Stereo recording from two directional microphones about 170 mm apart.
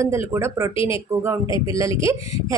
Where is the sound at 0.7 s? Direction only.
30° left (ahead or behind).